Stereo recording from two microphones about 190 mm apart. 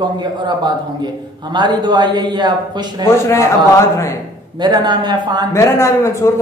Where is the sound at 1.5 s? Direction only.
25° right (ahead or behind).